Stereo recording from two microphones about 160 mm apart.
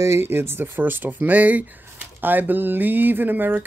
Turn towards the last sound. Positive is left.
turn(degrees=-10)  # may be behind; listen again after turning